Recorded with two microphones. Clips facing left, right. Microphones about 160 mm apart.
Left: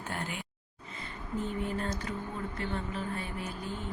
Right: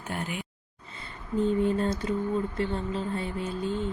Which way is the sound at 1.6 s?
30° right (ahead or behind).